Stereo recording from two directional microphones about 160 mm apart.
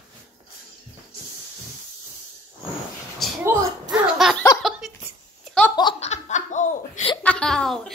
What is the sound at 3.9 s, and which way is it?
Laughter, 5° right (ahead or behind).